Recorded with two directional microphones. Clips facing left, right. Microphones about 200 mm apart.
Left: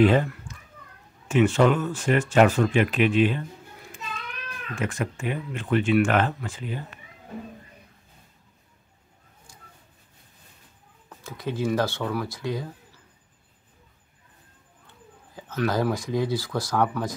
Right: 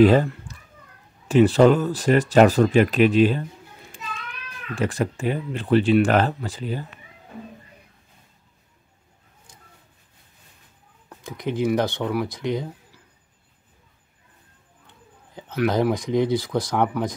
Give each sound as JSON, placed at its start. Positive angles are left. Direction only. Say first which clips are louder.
{"t": 0.0, "sound": "speech", "louder": "right 4 dB", "side_deg": -35}
{"t": 4.7, "sound": "speech", "louder": "right 5 dB", "side_deg": -35}
{"t": 9.5, "sound": "a sound", "louder": "right 1 dB", "side_deg": -20}
{"t": 11.1, "sound": "speech", "louder": "right 3 dB", "side_deg": -15}
{"t": 15.3, "sound": "speech", "louder": "right 3 dB", "side_deg": -15}